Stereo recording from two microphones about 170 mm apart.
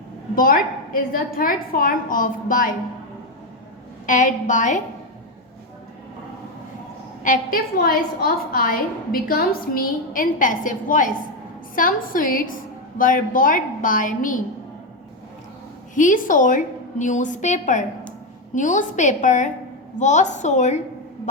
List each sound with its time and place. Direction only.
0.3 s a woman's voice: 55° left (ahead or behind)
4.0 s a woman's voice: 50° left (ahead or behind)
7.2 s a woman's voice: 55° left (ahead or behind)
16.0 s a woman's voice: 50° left (ahead or behind)